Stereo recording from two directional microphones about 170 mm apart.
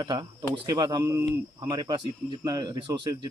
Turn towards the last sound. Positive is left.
turn(degrees=-25)  # may be behind; listen again after turning